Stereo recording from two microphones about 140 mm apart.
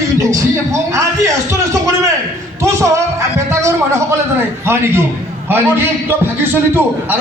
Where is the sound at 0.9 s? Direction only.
20° right (ahead or behind).